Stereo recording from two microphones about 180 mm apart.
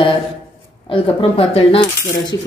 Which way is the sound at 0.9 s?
30° left (ahead or behind).